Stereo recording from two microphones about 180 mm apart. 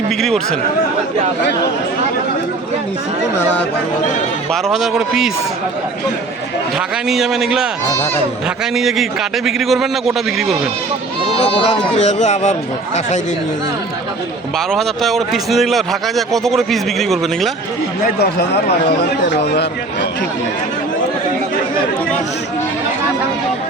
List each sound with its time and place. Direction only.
4.5 s a man's voice: centre (ahead or behind)
6.7 s a man's voice: centre (ahead or behind)
8.7 s a man's voice: centre (ahead or behind)
11.3 s speech: 35° left (ahead or behind)
14.7 s a man's voice: centre (ahead or behind)
18.0 s speech: 60° left (ahead or behind)